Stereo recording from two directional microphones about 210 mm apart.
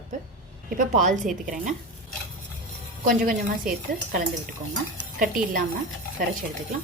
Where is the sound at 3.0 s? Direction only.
45° right (ahead or behind).